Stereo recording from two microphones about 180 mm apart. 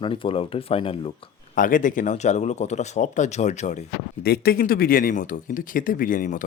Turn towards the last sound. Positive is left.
turn(degrees=50)  # may be behind; listen again after turning